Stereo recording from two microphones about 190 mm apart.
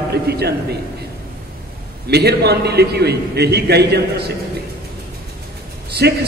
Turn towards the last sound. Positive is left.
turn(degrees=-60)  # may be behind; listen again after turning